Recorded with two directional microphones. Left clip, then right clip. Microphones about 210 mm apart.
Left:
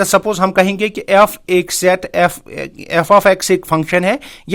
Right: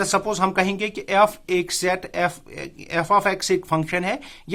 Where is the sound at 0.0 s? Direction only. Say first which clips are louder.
Left 8 dB; 35° left (ahead or behind).